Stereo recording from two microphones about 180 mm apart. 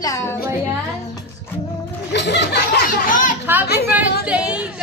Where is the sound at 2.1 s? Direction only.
70° left (ahead or behind); by 3.3 s 45° left (ahead or behind).